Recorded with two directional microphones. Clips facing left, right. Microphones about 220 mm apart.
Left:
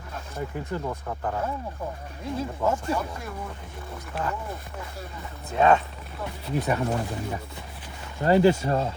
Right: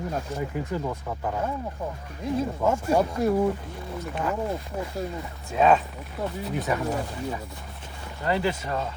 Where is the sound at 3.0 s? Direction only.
40° right (ahead or behind).